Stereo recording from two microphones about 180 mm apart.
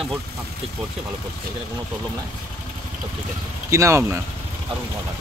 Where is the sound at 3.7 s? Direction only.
15° right (ahead or behind).